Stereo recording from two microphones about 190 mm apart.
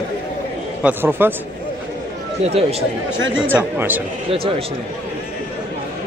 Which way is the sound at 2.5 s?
30° right (ahead or behind).